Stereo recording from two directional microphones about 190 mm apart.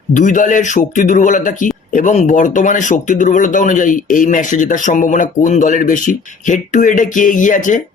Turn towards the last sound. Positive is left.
turn(degrees=40)  # may be behind; listen again after turning